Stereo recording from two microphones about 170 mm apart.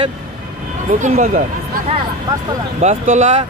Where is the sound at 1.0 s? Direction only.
45° right (ahead or behind).